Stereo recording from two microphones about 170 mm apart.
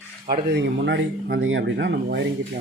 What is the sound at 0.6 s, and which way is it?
Speech, 90° right.